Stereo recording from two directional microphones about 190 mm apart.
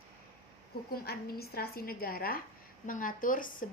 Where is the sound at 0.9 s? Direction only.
55° left (ahead or behind).